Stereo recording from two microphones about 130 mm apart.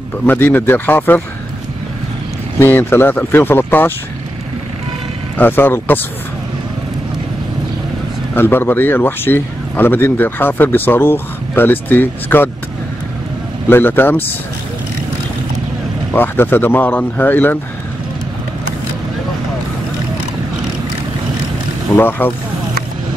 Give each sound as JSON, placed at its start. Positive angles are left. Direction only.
{"t": 0.3, "sound": "speech", "side_deg": 15}
{"t": 2.6, "sound": "speech", "side_deg": 15}
{"t": 5.4, "sound": "speech", "side_deg": 15}
{"t": 8.4, "sound": "speech", "side_deg": 15}
{"t": 13.7, "sound": "speech", "side_deg": 15}
{"t": 16.1, "sound": "speech", "side_deg": 15}
{"t": 21.9, "sound": "speech", "side_deg": 15}